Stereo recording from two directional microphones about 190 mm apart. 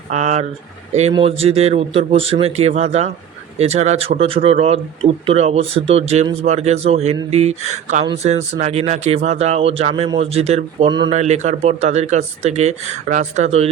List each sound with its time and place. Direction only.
0.1 s speech: 35° right (ahead or behind)